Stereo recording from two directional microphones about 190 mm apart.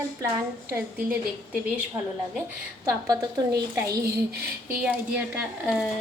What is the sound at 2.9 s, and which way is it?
A woman's voice, 20° right (ahead or behind).